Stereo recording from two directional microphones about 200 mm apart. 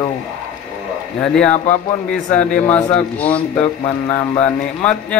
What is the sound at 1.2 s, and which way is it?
Speech, 5° left (ahead or behind).